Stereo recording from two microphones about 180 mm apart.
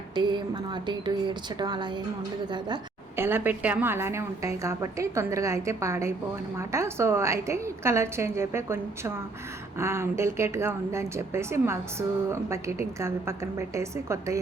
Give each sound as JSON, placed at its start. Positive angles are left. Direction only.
{"t": 0.2, "sound": "speech", "side_deg": -25}
{"t": 3.2, "sound": "a woman's voice", "side_deg": -10}